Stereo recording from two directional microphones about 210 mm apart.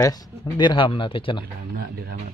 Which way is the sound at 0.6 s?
25° left (ahead or behind).